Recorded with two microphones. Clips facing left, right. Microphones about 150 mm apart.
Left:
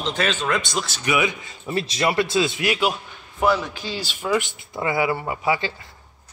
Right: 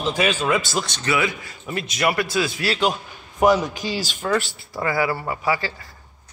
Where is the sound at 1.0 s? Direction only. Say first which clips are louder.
Left 2 dB; 15° left (ahead or behind).